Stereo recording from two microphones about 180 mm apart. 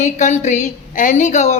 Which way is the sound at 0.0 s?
40° left (ahead or behind).